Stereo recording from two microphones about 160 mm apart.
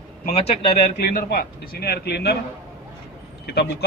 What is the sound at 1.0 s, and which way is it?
A man's voice, 70° left (ahead or behind).